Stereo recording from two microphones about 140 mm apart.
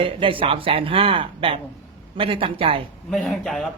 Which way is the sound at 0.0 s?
40° right (ahead or behind).